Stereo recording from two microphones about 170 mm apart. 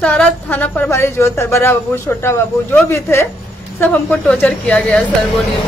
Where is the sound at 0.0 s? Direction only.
10° left (ahead or behind).